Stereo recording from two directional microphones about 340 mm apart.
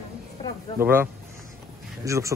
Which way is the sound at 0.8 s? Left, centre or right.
Centre.